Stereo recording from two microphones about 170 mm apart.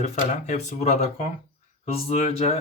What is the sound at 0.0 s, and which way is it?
Speech, 40° left (ahead or behind).